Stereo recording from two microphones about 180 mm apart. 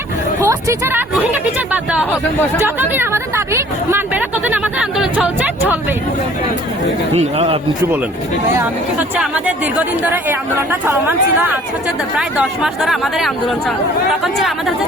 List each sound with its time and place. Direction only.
0.4 s a sound: 10° right (ahead or behind)
1.1 s speech: 10° right (ahead or behind)
7.3 s speech: 30° right (ahead or behind)
8.5 s speech: 10° right (ahead or behind)
12.1 s speech: 5° right (ahead or behind)